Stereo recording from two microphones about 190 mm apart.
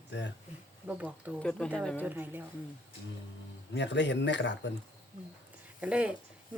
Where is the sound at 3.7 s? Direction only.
65° left (ahead or behind).